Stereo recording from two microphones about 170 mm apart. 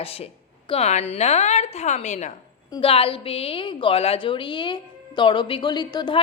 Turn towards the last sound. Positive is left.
turn(degrees=25)  # may be behind; listen again after turning